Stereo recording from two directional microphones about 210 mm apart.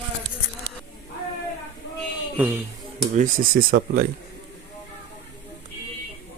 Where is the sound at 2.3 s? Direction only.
10° right (ahead or behind).